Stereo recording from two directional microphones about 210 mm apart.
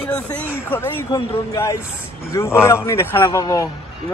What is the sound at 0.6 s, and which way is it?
A man's voice, 10° left (ahead or behind).